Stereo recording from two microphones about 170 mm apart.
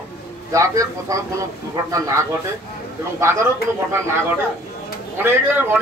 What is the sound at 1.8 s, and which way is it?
Speech, 20° right (ahead or behind).